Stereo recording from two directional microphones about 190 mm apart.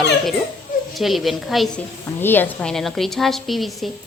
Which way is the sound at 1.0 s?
Centre (ahead or behind).